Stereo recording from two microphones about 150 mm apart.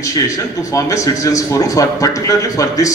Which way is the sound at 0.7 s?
20° left (ahead or behind).